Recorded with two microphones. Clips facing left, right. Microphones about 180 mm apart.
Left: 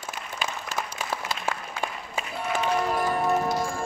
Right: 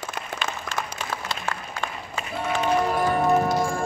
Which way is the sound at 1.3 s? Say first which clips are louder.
Even; 5° left (ahead or behind).